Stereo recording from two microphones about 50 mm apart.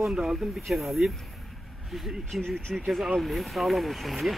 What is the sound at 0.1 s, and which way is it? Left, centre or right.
Speech, centre.